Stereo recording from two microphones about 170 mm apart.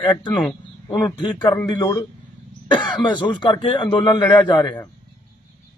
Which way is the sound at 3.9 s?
25° left (ahead or behind).